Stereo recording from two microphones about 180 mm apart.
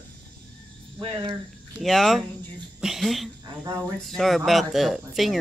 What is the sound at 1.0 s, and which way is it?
Speech, 30° right (ahead or behind).